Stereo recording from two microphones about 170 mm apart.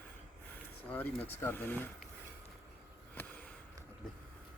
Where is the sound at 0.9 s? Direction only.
10° left (ahead or behind).